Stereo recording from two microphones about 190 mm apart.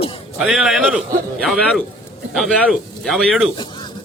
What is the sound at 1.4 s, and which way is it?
A man's voice, 5° left (ahead or behind).